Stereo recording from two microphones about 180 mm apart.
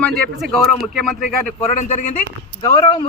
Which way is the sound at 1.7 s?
45° left (ahead or behind).